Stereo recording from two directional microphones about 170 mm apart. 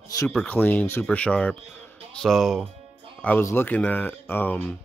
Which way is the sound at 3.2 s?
10° left (ahead or behind).